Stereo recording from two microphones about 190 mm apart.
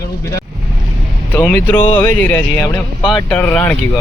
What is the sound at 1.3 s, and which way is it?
Speech, 10° left (ahead or behind).